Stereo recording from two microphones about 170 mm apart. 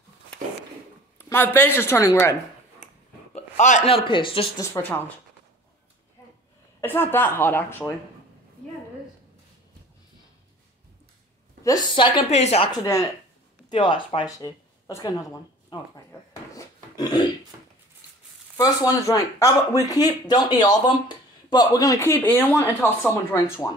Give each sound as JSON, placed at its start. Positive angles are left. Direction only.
{"t": 1.1, "sound": "a woman's voice", "side_deg": 10}
{"t": 3.3, "sound": "a sound", "side_deg": 45}
{"t": 3.9, "sound": "speech", "side_deg": 30}
{"t": 4.6, "sound": "speech", "side_deg": 15}
{"t": 6.8, "sound": "speech", "side_deg": 10}
{"t": 11.6, "sound": "speech", "side_deg": 25}
{"t": 13.7, "sound": "speech", "side_deg": 30}
{"t": 18.6, "sound": "speech", "side_deg": 20}